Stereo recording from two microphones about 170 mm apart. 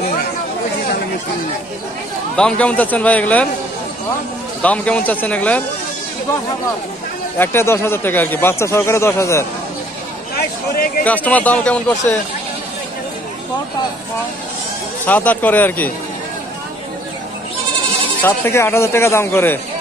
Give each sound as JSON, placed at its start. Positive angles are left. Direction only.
{"t": 2.3, "sound": "speech", "side_deg": 5}
{"t": 4.6, "sound": "speech", "side_deg": 10}
{"t": 7.3, "sound": "speech", "side_deg": 15}
{"t": 11.1, "sound": "speech", "side_deg": 10}
{"t": 15.0, "sound": "speech", "side_deg": 10}
{"t": 18.2, "sound": "speech", "side_deg": 15}